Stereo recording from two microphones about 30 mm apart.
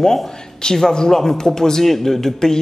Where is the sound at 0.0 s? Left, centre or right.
Left.